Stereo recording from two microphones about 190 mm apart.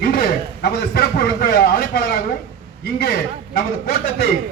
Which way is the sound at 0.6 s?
55° left (ahead or behind).